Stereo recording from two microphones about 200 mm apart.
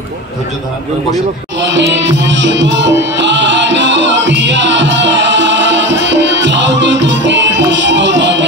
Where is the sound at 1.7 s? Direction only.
65° right (ahead or behind).